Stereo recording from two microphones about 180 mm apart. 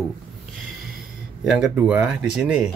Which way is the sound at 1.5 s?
5° right (ahead or behind).